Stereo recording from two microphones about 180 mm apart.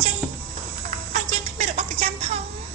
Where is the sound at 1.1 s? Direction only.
40° right (ahead or behind).